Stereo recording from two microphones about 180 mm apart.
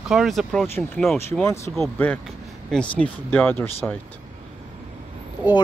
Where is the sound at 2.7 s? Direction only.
5° left (ahead or behind).